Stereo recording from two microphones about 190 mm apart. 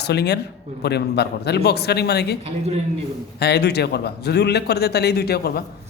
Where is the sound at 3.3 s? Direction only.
60° left (ahead or behind).